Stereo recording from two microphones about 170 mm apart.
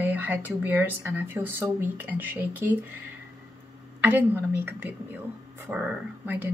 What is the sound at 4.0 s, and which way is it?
Speech, 10° right (ahead or behind).